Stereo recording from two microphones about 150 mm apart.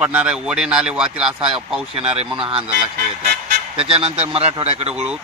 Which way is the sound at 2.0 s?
40° right (ahead or behind).